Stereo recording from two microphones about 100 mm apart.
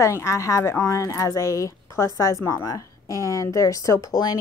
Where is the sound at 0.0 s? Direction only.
30° left (ahead or behind).